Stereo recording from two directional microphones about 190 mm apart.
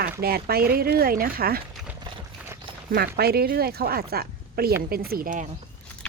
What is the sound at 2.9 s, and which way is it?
Speech, 55° right (ahead or behind).